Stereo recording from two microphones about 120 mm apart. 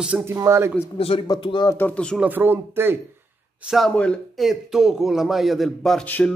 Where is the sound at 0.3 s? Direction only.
25° right (ahead or behind).